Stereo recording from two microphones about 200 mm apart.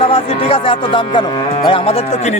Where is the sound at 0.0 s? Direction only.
25° left (ahead or behind).